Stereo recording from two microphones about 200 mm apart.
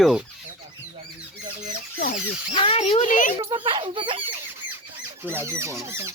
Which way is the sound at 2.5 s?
30° left (ahead or behind).